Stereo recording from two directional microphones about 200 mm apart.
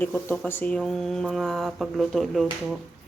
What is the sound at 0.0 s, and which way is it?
Speech, 10° left (ahead or behind).